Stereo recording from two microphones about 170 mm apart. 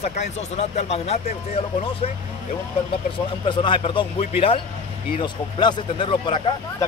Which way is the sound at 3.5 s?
30° left (ahead or behind).